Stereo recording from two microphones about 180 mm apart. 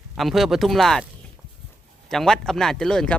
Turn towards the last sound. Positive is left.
turn(degrees=5)  # may be behind; listen again after turning